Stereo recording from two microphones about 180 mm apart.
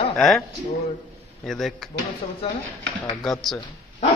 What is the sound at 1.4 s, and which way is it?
Speech, centre (ahead or behind).